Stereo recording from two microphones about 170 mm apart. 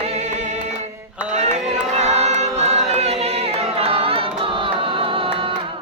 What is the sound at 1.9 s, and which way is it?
Choir, 40° right (ahead or behind).